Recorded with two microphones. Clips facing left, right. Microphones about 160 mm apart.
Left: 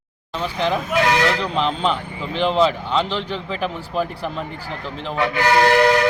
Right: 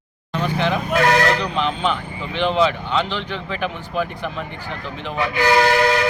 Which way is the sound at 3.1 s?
35° left (ahead or behind).